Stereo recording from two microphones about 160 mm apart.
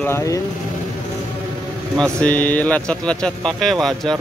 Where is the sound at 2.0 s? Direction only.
5° left (ahead or behind).